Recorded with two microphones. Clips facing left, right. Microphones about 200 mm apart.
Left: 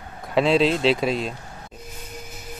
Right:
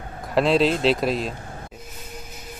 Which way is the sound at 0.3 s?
Centre (ahead or behind).